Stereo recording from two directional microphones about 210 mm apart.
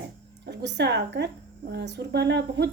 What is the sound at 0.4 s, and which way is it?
A woman's voice, 55° right (ahead or behind).